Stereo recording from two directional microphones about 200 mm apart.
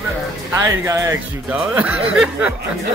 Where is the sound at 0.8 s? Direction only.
15° right (ahead or behind).